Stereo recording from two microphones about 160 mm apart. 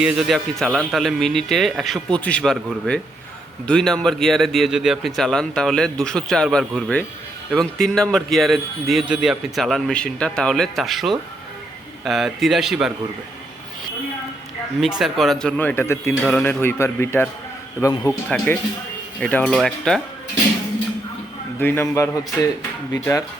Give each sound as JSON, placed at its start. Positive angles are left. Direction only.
{"t": 0.0, "sound": "speech", "side_deg": -5}
{"t": 14.8, "sound": "speech", "side_deg": -5}
{"t": 21.6, "sound": "speech", "side_deg": 15}